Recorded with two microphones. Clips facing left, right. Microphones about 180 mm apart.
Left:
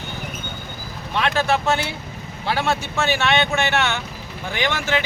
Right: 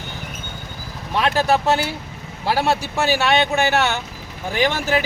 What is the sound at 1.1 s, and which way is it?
Speech, 40° right (ahead or behind).